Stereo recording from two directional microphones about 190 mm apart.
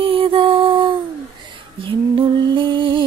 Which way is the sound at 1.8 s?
25° right (ahead or behind).